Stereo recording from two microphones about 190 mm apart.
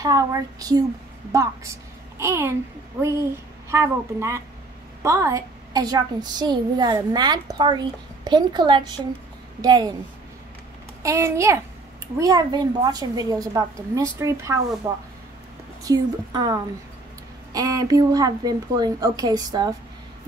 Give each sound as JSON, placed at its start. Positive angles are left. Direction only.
{"t": 0.0, "sound": "a woman's voice", "side_deg": -20}
{"t": 11.0, "sound": "a woman's voice", "side_deg": -15}